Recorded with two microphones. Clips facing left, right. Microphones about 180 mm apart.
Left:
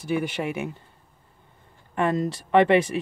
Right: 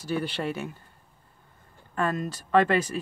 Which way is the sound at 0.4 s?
15° left (ahead or behind).